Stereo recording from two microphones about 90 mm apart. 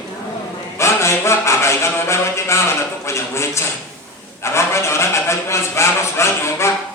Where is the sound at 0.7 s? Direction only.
30° left (ahead or behind).